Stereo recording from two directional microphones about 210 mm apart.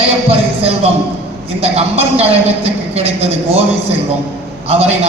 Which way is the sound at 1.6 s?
30° right (ahead or behind).